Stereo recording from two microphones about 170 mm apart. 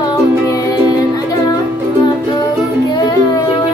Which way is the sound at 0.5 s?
20° left (ahead or behind).